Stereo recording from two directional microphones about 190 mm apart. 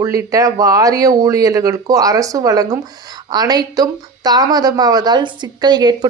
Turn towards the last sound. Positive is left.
turn(degrees=-20)  # may be behind; listen again after turning